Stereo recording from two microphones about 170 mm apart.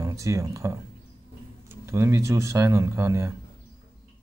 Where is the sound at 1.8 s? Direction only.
15° right (ahead or behind).